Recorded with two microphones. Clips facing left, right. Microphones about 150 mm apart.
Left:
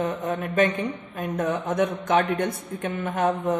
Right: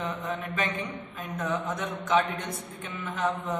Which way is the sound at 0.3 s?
55° left (ahead or behind).